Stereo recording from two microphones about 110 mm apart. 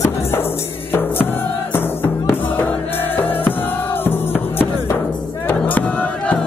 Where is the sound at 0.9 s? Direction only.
20° left (ahead or behind).